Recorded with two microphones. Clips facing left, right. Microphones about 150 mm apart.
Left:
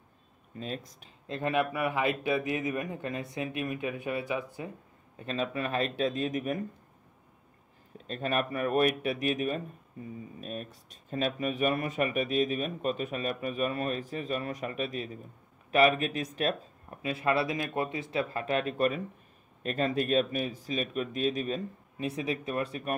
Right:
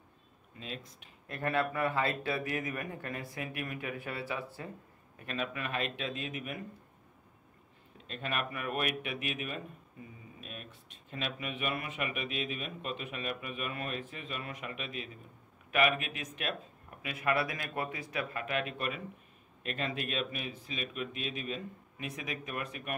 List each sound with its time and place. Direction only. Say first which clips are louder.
0.6 s speech: left 6 dB; 40° left (ahead or behind)
1.2 s speech: left 3 dB; 20° left (ahead or behind)
5.2 s speech: left 5 dB; 30° left (ahead or behind)
8.1 s speech: left 6 dB; 40° left (ahead or behind)